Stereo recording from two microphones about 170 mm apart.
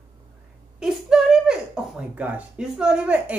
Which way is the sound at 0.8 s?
5° right (ahead or behind).